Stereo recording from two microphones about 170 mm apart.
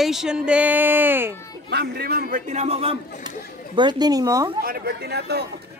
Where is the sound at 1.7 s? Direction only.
70° right (ahead or behind); by 2.9 s 35° right (ahead or behind).